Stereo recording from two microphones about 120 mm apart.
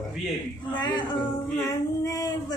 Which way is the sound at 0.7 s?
40° left (ahead or behind).